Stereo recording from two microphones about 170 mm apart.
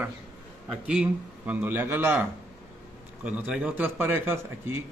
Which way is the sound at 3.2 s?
5° right (ahead or behind).